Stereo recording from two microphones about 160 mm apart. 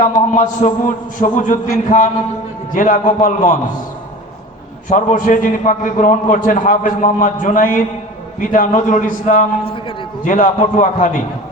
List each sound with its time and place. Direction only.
0.0 s a man's voice: 55° left (ahead or behind)
4.9 s a man's voice: 55° left (ahead or behind)
9.6 s a man's voice: 35° left (ahead or behind)
10.2 s a man's voice: 55° left (ahead or behind)